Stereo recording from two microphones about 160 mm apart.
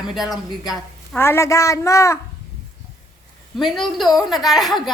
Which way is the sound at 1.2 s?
15° left (ahead or behind).